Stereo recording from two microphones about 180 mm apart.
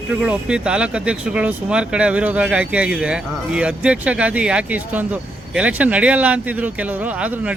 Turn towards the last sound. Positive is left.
turn(degrees=-5)  # may be behind; listen again after turning